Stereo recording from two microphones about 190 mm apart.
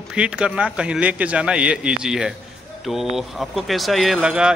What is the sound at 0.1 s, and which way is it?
Speech, 5° right (ahead or behind).